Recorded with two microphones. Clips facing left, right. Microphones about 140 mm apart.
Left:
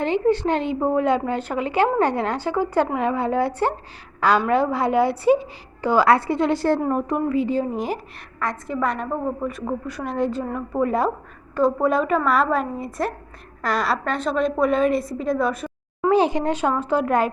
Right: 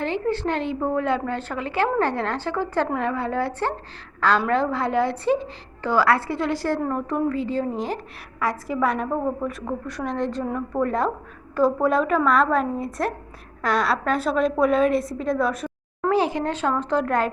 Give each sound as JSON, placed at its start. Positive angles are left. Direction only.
{"t": 0.0, "sound": "a woman's voice", "side_deg": 15}
{"t": 6.8, "sound": "a woman's voice", "side_deg": 15}
{"t": 8.4, "sound": "a woman's voice", "side_deg": -5}
{"t": 16.0, "sound": "a woman's voice", "side_deg": 20}